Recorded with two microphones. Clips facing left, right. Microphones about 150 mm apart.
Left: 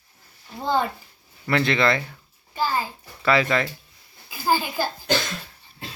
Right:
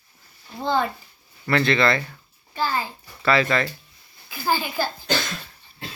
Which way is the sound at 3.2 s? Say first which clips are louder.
Even; 15° left (ahead or behind).